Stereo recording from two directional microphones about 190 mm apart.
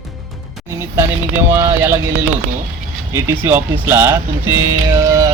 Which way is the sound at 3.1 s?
15° right (ahead or behind).